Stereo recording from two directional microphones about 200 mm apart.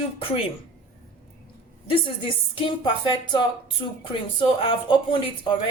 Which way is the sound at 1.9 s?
25° left (ahead or behind).